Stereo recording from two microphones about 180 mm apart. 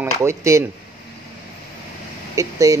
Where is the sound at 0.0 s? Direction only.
15° right (ahead or behind).